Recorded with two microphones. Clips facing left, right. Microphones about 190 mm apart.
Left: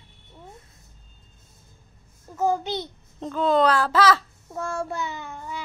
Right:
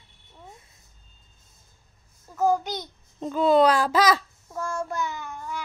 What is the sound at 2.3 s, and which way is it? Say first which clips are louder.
Speech: right 1 dB; 20° left (ahead or behind).